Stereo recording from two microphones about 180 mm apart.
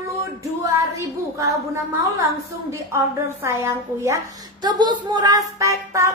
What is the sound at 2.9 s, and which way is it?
A woman's voice, 15° right (ahead or behind).